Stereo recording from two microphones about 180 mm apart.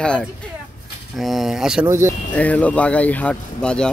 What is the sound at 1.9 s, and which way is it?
Speech, 15° right (ahead or behind).